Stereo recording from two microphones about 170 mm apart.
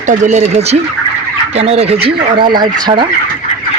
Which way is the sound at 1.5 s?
35° right (ahead or behind).